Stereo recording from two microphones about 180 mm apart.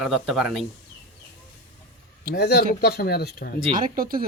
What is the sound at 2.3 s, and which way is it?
Speech, 65° left (ahead or behind).